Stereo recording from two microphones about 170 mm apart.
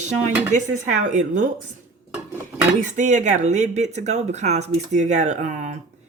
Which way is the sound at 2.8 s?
45° right (ahead or behind).